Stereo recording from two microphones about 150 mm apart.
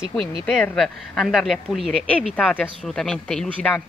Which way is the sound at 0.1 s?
5° left (ahead or behind).